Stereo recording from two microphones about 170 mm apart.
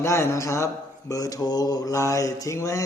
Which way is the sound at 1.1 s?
20° left (ahead or behind).